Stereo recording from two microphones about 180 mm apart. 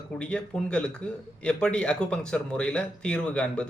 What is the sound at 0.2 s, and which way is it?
Speech, 5° left (ahead or behind).